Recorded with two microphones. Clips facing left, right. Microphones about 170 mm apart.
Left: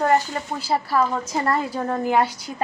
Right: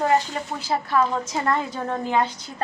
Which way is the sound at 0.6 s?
5° left (ahead or behind).